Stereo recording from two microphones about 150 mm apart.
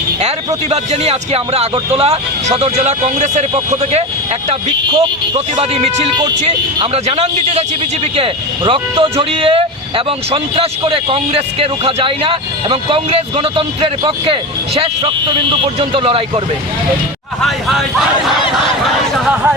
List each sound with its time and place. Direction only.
0.2 s speech: 45° right (ahead or behind)
4.9 s a man's voice: 30° right (ahead or behind)
5.5 s speech: 45° right (ahead or behind)
6.9 s a man's voice: 45° right (ahead or behind)
17.4 s speech: centre (ahead or behind)
19.2 s speech: 5° right (ahead or behind)